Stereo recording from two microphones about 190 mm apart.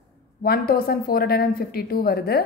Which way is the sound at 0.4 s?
55° left (ahead or behind).